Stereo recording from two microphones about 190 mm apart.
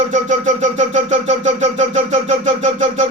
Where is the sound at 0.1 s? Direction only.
40° right (ahead or behind).